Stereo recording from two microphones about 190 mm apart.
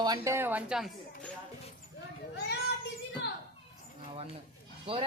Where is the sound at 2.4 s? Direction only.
60° left (ahead or behind).